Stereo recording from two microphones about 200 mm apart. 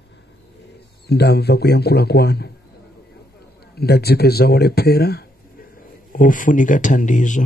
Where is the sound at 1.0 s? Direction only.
55° left (ahead or behind).